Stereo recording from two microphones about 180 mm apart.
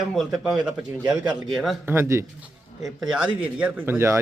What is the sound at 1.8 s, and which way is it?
Speech, 10° right (ahead or behind).